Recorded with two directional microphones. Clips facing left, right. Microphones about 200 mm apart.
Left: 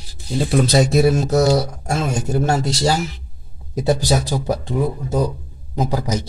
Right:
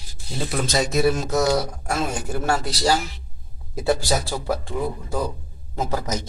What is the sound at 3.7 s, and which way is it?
Speech, 20° left (ahead or behind).